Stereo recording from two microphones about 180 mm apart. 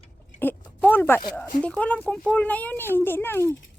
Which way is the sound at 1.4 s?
5° left (ahead or behind).